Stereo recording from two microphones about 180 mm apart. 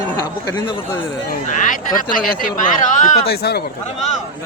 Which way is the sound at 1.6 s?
50° left (ahead or behind).